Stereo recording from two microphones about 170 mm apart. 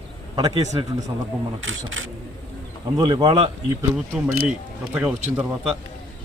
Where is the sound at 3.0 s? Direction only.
30° right (ahead or behind).